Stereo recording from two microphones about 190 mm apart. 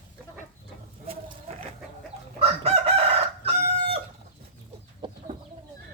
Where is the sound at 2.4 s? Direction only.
30° right (ahead or behind).